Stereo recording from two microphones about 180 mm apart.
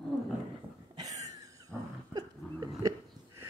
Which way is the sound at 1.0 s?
20° right (ahead or behind).